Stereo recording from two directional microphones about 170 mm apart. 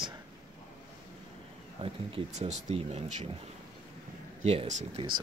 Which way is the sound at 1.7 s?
35° right (ahead or behind).